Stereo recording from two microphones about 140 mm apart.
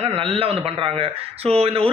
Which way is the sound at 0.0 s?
40° right (ahead or behind).